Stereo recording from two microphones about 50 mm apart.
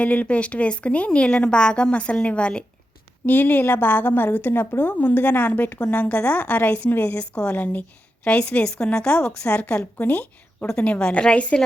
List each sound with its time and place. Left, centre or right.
0.0 s a woman's voice: left
3.2 s a woman's voice: left
8.4 s a woman's voice: centre